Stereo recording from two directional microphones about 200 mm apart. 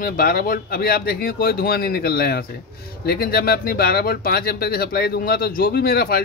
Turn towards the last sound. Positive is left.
turn(degrees=50)  # may be behind; listen again after turning